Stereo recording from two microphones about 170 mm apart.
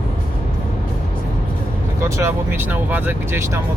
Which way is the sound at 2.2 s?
15° right (ahead or behind).